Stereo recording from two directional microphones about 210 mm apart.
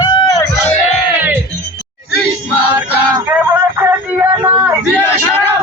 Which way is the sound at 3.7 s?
10° right (ahead or behind).